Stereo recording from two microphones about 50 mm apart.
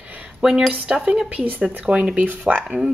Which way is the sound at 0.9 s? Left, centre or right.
Centre.